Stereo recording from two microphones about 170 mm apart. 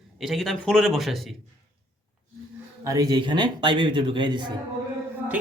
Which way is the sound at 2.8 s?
20° right (ahead or behind).